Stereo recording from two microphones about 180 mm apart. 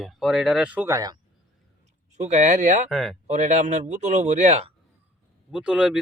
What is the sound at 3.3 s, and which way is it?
A man's voice, 40° right (ahead or behind).